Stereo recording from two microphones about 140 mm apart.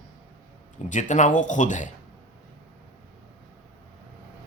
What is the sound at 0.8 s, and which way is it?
Speech, 60° left (ahead or behind).